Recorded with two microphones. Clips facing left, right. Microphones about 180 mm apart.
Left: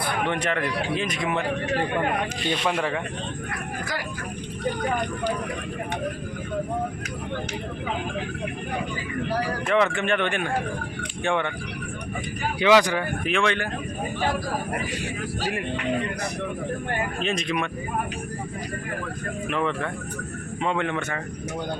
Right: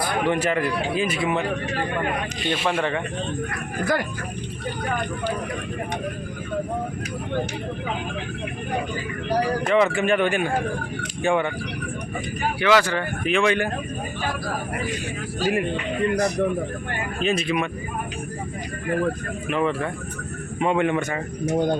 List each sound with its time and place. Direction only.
0.3 s a man's voice: 5° right (ahead or behind)
2.5 s a man's voice: 5° right (ahead or behind)
9.6 s speech: 5° right (ahead or behind)
12.5 s speech: 15° left (ahead or behind)
13.2 s a man's voice: 5° right (ahead or behind)
16.1 s a man's voice: 45° right (ahead or behind)
17.2 s a man's voice: 5° right (ahead or behind)
19.5 s a man's voice: 5° right (ahead or behind)
21.4 s a man's voice: 45° right (ahead or behind)